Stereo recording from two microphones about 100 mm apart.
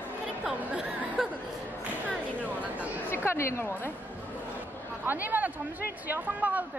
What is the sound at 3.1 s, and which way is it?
Chatter, 25° left (ahead or behind).